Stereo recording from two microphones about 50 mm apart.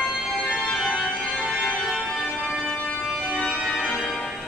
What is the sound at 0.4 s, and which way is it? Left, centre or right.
Organ, left.